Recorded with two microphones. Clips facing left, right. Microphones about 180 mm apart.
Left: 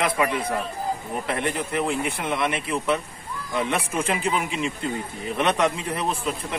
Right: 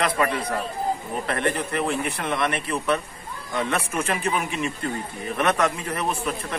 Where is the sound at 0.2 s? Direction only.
10° left (ahead or behind).